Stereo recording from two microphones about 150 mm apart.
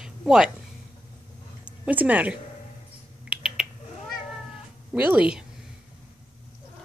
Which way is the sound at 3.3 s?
5° right (ahead or behind).